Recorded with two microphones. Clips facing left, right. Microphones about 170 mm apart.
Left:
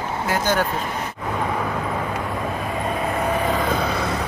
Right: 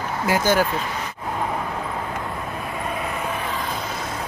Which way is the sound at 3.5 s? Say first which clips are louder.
Left 7 dB; 70° left (ahead or behind).